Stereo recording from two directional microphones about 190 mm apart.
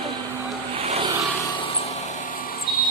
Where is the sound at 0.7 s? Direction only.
30° right (ahead or behind).